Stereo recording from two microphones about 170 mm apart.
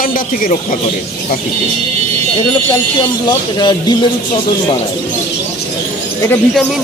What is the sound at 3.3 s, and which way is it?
Speech, 25° left (ahead or behind).